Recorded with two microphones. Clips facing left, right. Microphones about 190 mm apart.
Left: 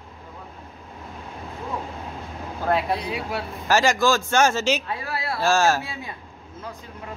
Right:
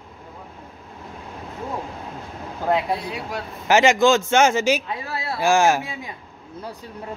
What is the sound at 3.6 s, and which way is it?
A man's voice, 20° right (ahead or behind).